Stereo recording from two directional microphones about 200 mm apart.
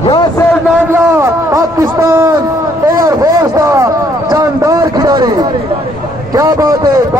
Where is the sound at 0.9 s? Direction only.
10° right (ahead or behind).